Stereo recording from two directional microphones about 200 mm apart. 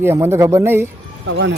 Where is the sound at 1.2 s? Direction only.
80° right.